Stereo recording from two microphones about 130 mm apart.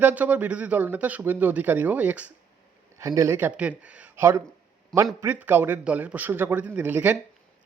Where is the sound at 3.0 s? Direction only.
25° right (ahead or behind).